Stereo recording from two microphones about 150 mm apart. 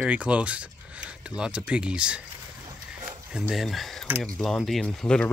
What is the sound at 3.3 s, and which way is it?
Speech, 5° right (ahead or behind).